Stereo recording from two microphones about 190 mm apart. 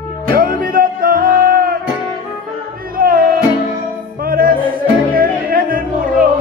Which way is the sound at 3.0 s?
50° right (ahead or behind).